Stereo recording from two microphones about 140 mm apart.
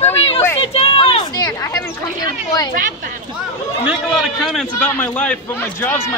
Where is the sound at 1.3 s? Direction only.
25° left (ahead or behind).